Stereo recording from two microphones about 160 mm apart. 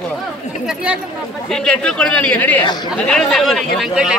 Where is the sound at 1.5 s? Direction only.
5° left (ahead or behind).